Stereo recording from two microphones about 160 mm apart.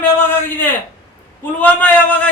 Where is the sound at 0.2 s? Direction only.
10° left (ahead or behind).